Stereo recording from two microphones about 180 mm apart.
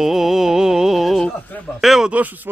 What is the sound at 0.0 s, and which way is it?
Speech, centre (ahead or behind).